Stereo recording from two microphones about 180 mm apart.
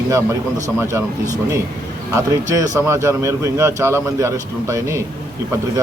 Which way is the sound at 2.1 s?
20° right (ahead or behind).